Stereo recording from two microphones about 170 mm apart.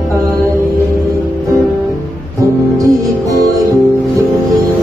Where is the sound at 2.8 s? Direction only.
20° right (ahead or behind).